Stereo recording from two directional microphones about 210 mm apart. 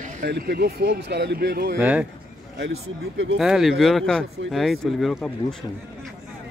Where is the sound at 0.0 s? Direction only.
45° right (ahead or behind).